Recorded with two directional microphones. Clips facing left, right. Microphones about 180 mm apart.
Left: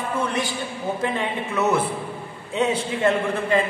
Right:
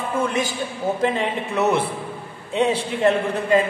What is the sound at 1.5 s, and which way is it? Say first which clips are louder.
A man's voice: right 1 dB; 30° right (ahead or behind).